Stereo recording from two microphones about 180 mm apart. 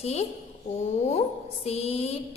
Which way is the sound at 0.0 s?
35° left (ahead or behind).